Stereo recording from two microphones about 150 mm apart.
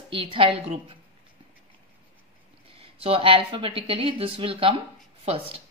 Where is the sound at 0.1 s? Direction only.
35° right (ahead or behind).